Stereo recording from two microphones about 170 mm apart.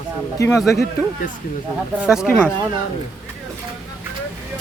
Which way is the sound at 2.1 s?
5° right (ahead or behind).